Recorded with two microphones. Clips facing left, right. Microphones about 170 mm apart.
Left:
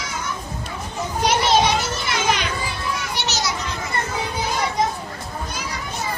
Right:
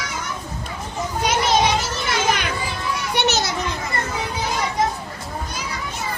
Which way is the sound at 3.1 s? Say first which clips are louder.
Right 5 dB; 55° right (ahead or behind).